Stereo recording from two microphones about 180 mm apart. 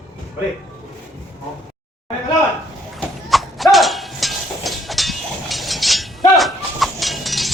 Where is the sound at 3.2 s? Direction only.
Centre (ahead or behind).